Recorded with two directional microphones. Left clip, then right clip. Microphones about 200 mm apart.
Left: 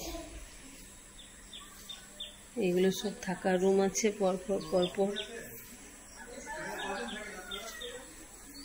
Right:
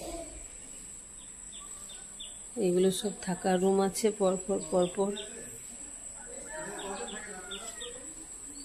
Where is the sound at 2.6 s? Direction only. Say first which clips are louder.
Right 2 dB; 15° right (ahead or behind).